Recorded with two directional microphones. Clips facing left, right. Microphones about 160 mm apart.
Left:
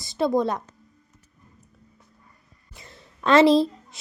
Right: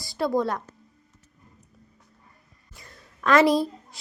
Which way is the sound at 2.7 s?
25° left (ahead or behind).